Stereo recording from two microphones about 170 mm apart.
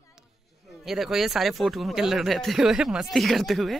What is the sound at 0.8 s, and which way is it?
Speech, centre (ahead or behind).